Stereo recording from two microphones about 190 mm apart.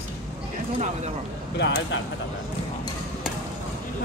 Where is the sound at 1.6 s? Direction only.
70° left (ahead or behind).